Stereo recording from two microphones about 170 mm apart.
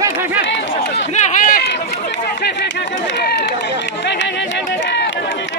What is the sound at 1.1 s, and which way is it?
Run, 45° left (ahead or behind).